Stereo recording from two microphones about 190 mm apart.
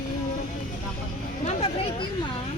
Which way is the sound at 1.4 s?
30° left (ahead or behind).